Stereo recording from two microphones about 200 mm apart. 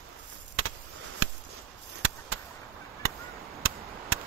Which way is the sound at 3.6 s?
90° right.